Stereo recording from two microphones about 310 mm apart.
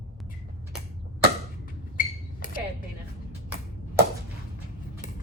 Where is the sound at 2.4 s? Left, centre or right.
Left.